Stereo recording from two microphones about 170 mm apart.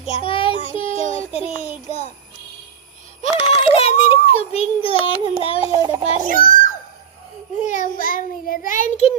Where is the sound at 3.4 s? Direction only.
35° left (ahead or behind).